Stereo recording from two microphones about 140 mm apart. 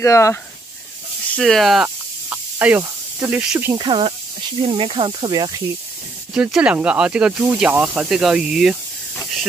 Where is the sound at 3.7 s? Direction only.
35° right (ahead or behind).